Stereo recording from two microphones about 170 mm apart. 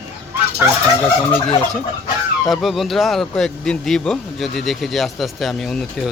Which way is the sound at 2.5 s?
Centre (ahead or behind).